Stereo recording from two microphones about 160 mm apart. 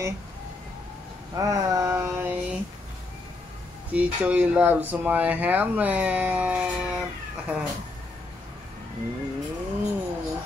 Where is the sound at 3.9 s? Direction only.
10° right (ahead or behind).